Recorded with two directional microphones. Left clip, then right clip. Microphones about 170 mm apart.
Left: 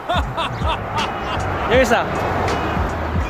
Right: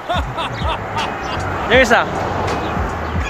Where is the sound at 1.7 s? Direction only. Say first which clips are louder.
Right 4 dB; 20° right (ahead or behind).